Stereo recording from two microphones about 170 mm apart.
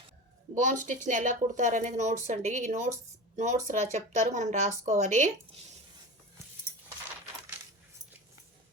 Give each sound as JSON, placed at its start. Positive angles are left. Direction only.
{"t": 0.6, "sound": "speech", "side_deg": -50}